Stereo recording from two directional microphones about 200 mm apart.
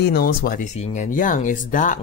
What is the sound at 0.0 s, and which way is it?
Speech, 50° left (ahead or behind).